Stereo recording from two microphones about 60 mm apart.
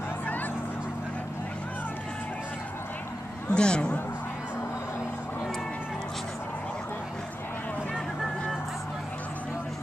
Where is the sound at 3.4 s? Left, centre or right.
Centre.